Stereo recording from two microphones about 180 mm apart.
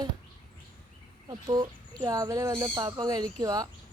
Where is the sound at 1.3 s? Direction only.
20° right (ahead or behind).